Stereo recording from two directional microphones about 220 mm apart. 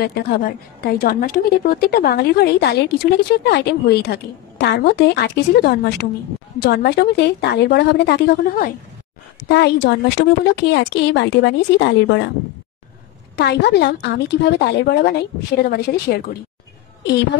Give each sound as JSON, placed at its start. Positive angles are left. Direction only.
{"t": 0.0, "sound": "a woman's voice", "side_deg": 45}
{"t": 9.5, "sound": "a woman's voice", "side_deg": 50}
{"t": 13.4, "sound": "a woman's voice", "side_deg": 50}